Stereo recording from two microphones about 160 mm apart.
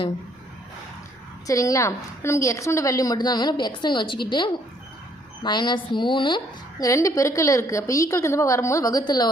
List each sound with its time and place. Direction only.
1.5 s a woman's voice: 20° left (ahead or behind)